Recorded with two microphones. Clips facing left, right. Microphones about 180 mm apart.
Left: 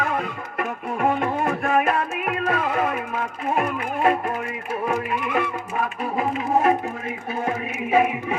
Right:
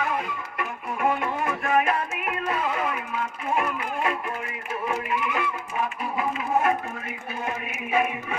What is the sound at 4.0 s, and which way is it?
Music, 40° left (ahead or behind).